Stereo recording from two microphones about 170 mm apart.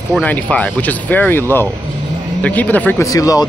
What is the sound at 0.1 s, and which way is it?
Speech, 10° left (ahead or behind).